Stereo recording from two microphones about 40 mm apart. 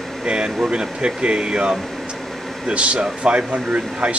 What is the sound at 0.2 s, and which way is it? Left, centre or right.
Speech, right.